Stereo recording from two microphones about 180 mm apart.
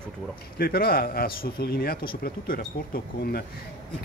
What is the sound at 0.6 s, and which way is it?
Speech, 55° left (ahead or behind).